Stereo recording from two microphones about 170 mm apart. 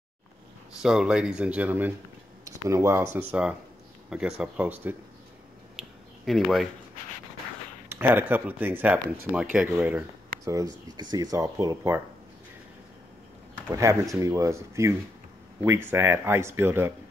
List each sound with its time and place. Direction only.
0.8 s speech: 5° right (ahead or behind)
5.8 s a sound: centre (ahead or behind)
7.9 s speech: 10° right (ahead or behind)
14.1 s speech: 20° right (ahead or behind)